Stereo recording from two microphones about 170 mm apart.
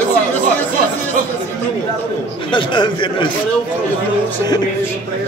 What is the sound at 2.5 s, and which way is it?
Speech, 30° left (ahead or behind).